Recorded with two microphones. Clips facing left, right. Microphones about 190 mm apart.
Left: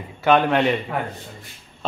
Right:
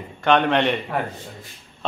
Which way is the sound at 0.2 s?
5° left (ahead or behind).